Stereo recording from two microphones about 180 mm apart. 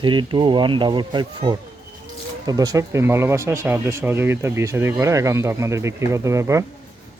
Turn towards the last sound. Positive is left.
turn(degrees=-15)  # may be behind; listen again after turning